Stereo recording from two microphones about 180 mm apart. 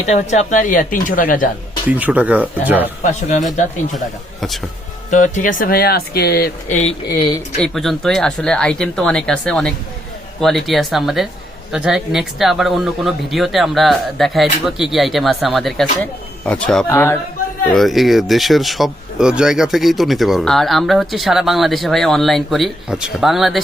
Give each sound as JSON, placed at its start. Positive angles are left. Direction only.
{"t": 0.0, "sound": "speech", "side_deg": 40}
{"t": 1.9, "sound": "speech", "side_deg": -10}
{"t": 3.0, "sound": "speech", "side_deg": 40}
{"t": 3.9, "sound": "speech", "side_deg": 0}
{"t": 5.1, "sound": "speech", "side_deg": 45}
{"t": 7.6, "sound": "speech", "side_deg": 0}
{"t": 17.7, "sound": "speech", "side_deg": 0}